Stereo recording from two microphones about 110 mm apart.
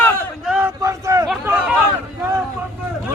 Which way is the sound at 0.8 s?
30° right (ahead or behind).